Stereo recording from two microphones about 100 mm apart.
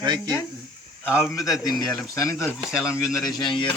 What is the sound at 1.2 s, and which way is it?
Speech, centre (ahead or behind).